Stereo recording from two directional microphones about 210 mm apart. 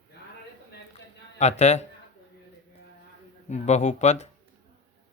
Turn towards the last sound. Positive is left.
turn(degrees=35)  # may be behind; listen again after turning